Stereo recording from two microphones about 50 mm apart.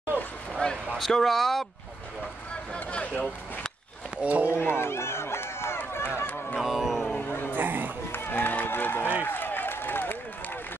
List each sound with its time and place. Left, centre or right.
0.6 s a sound: left
0.9 s speech: centre
2.7 s a sound: left
4.2 s speech: right
4.6 s run: left
6.0 s honk: left
6.6 s music: centre
7.2 s a sound: left
7.5 s run: right
8.1 s run: left
9.2 s applause: left